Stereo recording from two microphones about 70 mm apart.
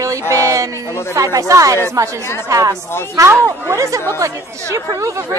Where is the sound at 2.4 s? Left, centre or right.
Right.